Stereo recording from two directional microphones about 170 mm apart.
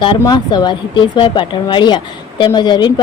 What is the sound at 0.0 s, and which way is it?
Speech, 25° left (ahead or behind).